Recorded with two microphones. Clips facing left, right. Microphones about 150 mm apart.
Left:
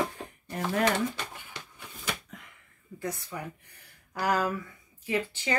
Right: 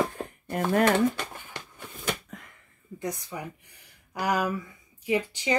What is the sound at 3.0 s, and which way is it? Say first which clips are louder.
A woman's voice: right 2 dB; 15° right (ahead or behind).